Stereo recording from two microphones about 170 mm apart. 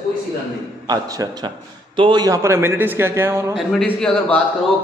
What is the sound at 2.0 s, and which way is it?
A man's voice, 25° right (ahead or behind).